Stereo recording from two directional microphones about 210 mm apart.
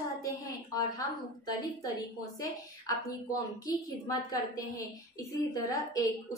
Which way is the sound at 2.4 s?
15° left (ahead or behind).